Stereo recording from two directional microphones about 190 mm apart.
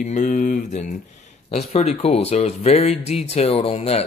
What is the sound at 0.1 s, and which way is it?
Speech, 45° left (ahead or behind).